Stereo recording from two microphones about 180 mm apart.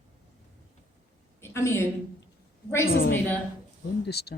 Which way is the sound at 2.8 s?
60° left (ahead or behind).